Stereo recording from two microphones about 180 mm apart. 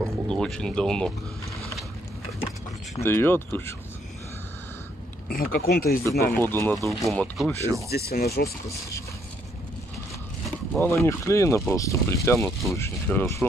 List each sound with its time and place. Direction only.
0.0 s speech: 5° left (ahead or behind)
3.0 s speech: 15° left (ahead or behind)
5.3 s speech: 55° left (ahead or behind)
6.3 s speech: 10° left (ahead or behind)
6.9 s speech: centre (ahead or behind)
7.9 s speech: 60° left (ahead or behind)
10.8 s speech: 15° left (ahead or behind)